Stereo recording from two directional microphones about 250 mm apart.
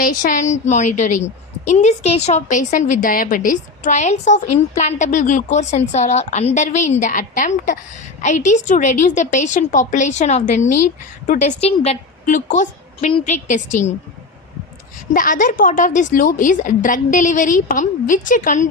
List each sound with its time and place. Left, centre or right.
0.0 s a woman's voice: left
10.7 s speech: left
11.3 s a woman's voice: left
15.1 s a woman's voice: left